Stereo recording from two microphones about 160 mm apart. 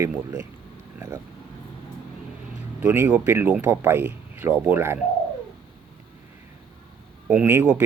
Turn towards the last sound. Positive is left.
turn(degrees=-10)  # may be behind; listen again after turning